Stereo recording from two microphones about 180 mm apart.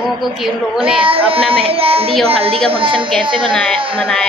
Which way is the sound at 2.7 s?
30° right (ahead or behind).